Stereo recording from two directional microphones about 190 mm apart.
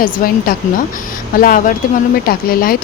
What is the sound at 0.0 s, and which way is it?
Speech, 50° left (ahead or behind).